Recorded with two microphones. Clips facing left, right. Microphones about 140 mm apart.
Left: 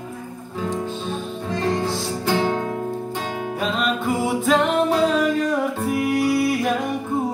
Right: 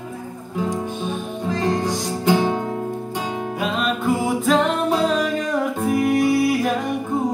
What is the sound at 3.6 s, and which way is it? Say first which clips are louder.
Music: right 1 dB; centre (ahead or behind).